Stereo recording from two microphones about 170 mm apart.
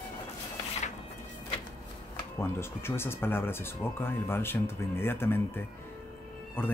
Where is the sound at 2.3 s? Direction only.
15° left (ahead or behind).